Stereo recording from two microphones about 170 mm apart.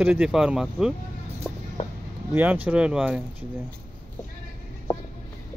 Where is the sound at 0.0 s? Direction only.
10° right (ahead or behind).